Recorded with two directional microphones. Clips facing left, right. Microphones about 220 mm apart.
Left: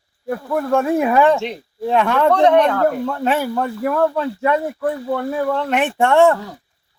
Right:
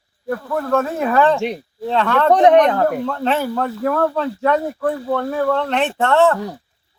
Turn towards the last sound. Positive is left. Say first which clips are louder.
# left 2 dB
turn(degrees=15)  # may be behind; listen again after turning